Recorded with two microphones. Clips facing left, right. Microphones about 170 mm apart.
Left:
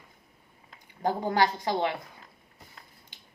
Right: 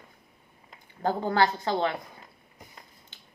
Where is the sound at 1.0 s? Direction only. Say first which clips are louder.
Right 1 dB; 15° left (ahead or behind).